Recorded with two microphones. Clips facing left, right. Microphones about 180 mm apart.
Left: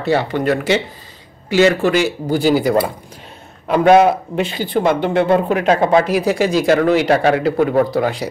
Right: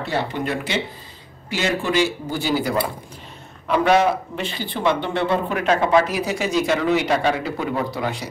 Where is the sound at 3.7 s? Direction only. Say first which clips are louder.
Left 6 dB; 50° left (ahead or behind).